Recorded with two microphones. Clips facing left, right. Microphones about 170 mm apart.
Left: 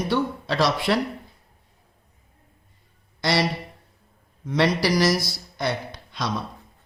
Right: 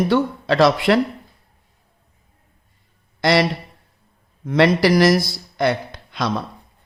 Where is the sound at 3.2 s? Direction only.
90° right.